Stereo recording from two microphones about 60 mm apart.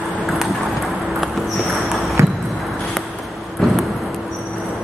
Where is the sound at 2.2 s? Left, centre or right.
Right.